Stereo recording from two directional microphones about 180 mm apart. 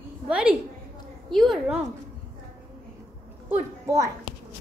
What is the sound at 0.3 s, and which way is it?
A woman's voice, 5° right (ahead or behind).